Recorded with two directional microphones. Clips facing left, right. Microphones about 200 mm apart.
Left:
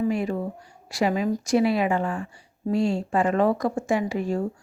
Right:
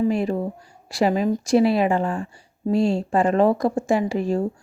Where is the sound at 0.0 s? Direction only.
30° right (ahead or behind).